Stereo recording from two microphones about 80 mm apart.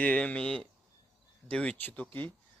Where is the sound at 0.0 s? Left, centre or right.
Centre.